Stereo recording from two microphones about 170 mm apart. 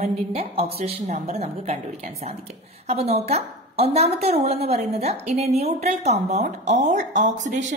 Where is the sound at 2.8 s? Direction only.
35° right (ahead or behind).